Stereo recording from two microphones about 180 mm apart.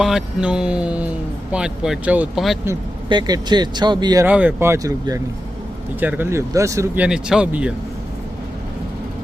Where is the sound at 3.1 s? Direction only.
25° right (ahead or behind).